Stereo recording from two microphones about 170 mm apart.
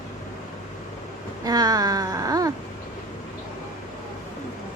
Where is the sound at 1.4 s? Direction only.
20° right (ahead or behind).